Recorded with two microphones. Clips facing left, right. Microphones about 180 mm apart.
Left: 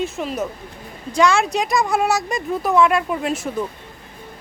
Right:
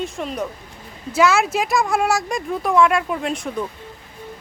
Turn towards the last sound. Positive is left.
turn(degrees=5)  # may be behind; listen again after turning